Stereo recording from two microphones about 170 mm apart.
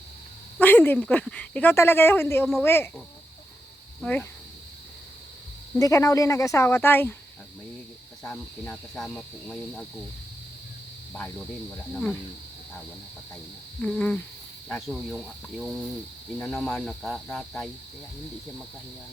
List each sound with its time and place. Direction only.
0.6 s speech: 10° left (ahead or behind)
4.0 s speech: 10° left (ahead or behind)
5.8 s speech: 20° left (ahead or behind)
8.2 s cricket: 5° left (ahead or behind)
11.1 s cricket: 5° left (ahead or behind)
13.8 s cricket: 5° left (ahead or behind)